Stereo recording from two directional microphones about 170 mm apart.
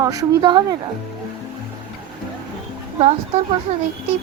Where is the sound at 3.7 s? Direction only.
45° right (ahead or behind).